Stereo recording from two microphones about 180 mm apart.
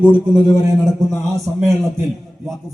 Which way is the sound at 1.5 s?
5° right (ahead or behind).